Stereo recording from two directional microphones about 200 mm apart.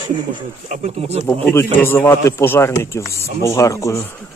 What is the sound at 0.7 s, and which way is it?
Speech, 35° right (ahead or behind).